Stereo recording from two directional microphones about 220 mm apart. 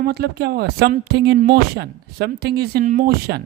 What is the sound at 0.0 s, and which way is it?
Speech, 45° right (ahead or behind).